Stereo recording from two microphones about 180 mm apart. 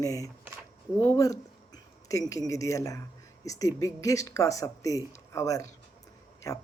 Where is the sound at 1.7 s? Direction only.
20° left (ahead or behind).